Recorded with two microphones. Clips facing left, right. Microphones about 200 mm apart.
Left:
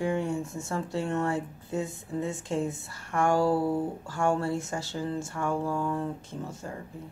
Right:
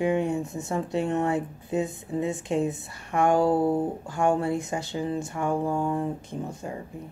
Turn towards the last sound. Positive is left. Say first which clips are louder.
# right 4 dB
turn(degrees=-15)  # may be behind; listen again after turning